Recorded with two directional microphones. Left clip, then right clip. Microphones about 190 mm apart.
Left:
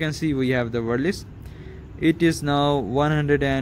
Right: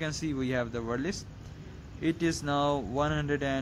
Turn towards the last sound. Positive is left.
turn(degrees=20)  # may be behind; listen again after turning